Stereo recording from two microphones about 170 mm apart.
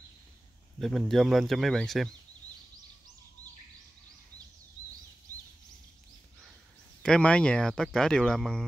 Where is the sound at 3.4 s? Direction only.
45° left (ahead or behind).